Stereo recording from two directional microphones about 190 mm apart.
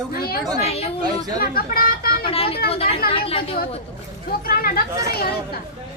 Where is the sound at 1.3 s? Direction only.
50° left (ahead or behind).